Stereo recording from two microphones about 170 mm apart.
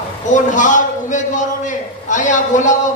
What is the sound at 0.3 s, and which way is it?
A man's voice, 50° left (ahead or behind).